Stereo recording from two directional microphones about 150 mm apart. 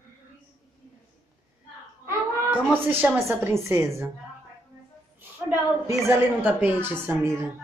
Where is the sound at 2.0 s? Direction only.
15° right (ahead or behind).